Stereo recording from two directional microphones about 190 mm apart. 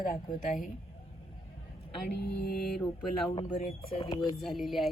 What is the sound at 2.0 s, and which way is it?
Speech, 55° left (ahead or behind).